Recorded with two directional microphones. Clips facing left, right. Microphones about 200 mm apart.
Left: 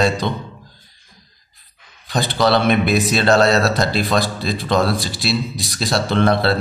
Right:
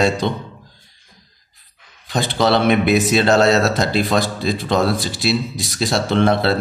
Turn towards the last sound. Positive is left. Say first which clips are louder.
# even
turn(degrees=-20)  # may be behind; listen again after turning